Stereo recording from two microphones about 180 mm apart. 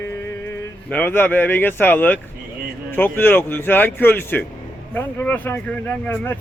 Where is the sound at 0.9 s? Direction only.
10° left (ahead or behind).